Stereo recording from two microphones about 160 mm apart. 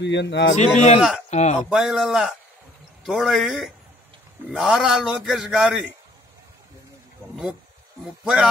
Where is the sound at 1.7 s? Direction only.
Centre (ahead or behind).